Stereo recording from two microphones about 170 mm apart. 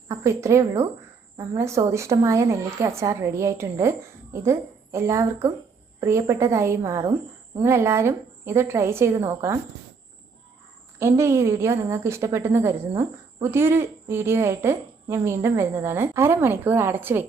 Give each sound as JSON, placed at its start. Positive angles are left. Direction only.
{"t": 0.1, "sound": "a woman's voice", "side_deg": -15}
{"t": 11.0, "sound": "a woman's voice", "side_deg": -15}